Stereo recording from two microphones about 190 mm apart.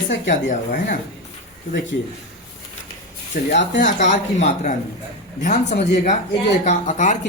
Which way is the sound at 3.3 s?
60° left (ahead or behind).